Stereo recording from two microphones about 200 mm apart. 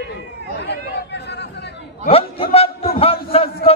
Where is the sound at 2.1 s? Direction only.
30° left (ahead or behind).